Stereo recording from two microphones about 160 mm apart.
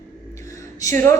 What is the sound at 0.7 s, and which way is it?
Speech, 20° left (ahead or behind).